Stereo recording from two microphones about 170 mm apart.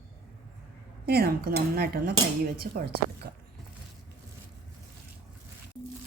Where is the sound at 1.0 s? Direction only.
65° right (ahead or behind).